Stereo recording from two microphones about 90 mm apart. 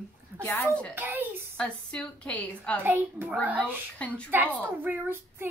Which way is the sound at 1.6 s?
10° left (ahead or behind).